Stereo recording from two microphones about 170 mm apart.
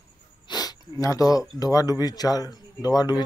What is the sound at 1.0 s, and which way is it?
Speech, 20° left (ahead or behind).